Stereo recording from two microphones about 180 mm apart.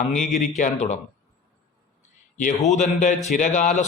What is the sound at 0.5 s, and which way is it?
Speech, 40° left (ahead or behind).